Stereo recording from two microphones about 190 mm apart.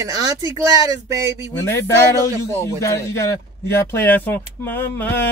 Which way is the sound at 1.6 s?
15° left (ahead or behind).